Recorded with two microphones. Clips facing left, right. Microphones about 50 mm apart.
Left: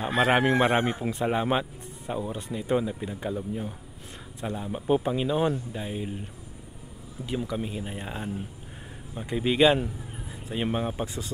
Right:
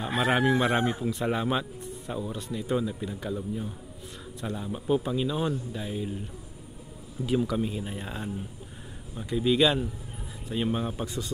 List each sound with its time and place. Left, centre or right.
0.2 s a man's voice: left
1.2 s speech: left
7.2 s speech: centre
9.1 s a man's voice: left